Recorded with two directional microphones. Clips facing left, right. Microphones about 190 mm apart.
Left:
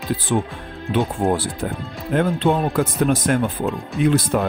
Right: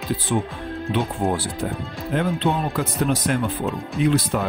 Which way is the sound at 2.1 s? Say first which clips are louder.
Left 4 dB; 50° left (ahead or behind).